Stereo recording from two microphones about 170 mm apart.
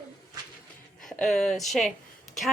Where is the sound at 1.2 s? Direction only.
5° left (ahead or behind).